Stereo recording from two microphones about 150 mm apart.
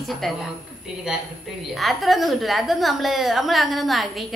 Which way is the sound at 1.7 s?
Centre (ahead or behind).